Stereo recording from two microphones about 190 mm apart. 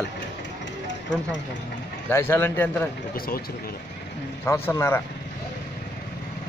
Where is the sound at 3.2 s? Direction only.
50° left (ahead or behind).